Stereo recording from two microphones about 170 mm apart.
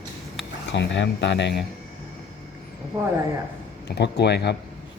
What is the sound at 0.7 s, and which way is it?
Speech, 90° left.